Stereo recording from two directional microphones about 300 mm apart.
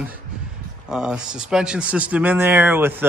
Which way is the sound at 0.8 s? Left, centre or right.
Centre.